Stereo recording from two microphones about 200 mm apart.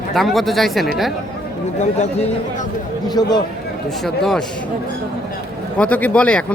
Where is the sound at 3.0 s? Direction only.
20° left (ahead or behind).